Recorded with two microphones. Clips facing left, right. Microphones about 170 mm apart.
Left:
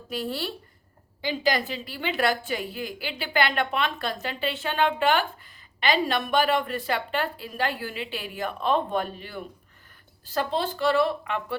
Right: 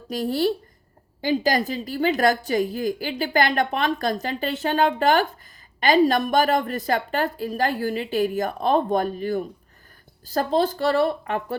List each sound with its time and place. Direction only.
0.1 s a woman's voice: 40° right (ahead or behind)